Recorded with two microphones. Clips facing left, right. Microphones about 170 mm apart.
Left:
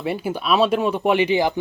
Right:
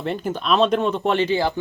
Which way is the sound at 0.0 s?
10° left (ahead or behind).